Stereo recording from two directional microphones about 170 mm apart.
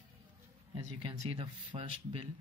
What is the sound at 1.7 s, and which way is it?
Speech, 30° right (ahead or behind).